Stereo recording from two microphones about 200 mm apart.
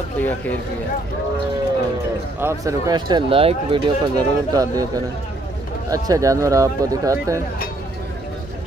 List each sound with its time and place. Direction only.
0.2 s speech: 10° left (ahead or behind)
2.4 s speech: 20° right (ahead or behind)